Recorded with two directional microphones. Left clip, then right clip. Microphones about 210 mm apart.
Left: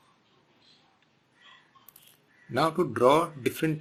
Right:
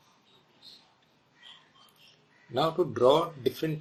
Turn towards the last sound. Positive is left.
turn(degrees=55)  # may be behind; listen again after turning